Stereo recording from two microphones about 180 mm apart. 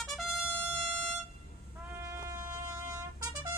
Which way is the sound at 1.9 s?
15° right (ahead or behind).